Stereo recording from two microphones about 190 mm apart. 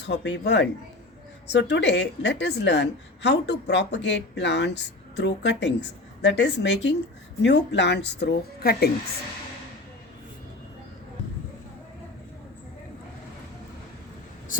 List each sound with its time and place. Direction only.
0.1 s a woman's voice: 65° left (ahead or behind)